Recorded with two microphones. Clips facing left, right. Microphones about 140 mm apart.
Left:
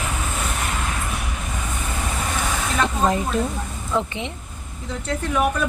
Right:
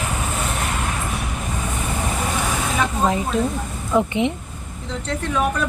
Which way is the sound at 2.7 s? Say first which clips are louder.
Left 1 dB; centre (ahead or behind).